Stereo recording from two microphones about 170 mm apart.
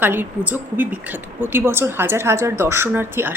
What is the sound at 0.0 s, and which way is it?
Speech, 10° right (ahead or behind).